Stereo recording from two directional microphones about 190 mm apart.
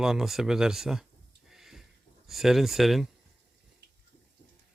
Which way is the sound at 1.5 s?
Centre (ahead or behind).